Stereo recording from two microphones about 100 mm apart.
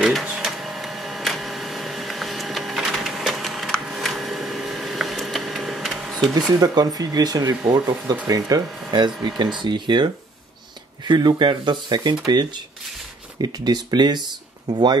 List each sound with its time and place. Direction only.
0.0 s printer: 5° right (ahead or behind)
6.6 s speech: 40° right (ahead or behind)